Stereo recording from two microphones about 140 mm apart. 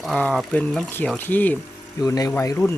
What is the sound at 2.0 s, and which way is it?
Speech, 25° left (ahead or behind).